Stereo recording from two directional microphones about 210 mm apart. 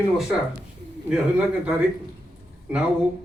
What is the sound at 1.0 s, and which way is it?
Speech, 5° right (ahead or behind).